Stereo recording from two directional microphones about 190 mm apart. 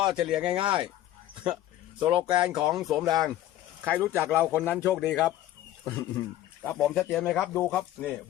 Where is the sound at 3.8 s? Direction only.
10° right (ahead or behind).